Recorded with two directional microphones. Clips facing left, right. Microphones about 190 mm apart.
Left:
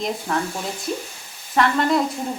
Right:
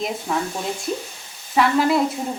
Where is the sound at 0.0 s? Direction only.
Centre (ahead or behind).